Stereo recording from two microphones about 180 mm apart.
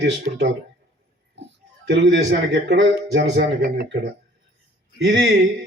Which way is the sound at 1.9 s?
70° right (ahead or behind).